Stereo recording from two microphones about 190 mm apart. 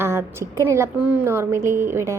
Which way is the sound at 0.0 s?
15° right (ahead or behind).